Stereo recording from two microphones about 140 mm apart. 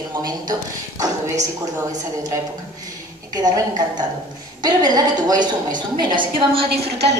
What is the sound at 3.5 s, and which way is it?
A woman's voice, 30° right (ahead or behind).